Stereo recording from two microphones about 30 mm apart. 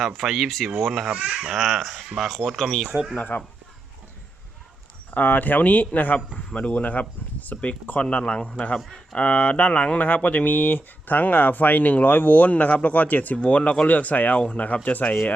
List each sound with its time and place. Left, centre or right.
0.2 s speech: centre
1.2 s speech: right
1.5 s speech: centre
3.2 s speech: left
5.1 s speech: left
6.1 s a man's voice: left
6.8 s speech: left
8.1 s a man's voice: left
10.2 s speech: left
13.3 s a man's voice: left
15.0 s speech: left